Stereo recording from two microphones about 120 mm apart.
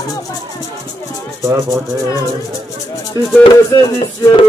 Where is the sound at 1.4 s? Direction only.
25° right (ahead or behind).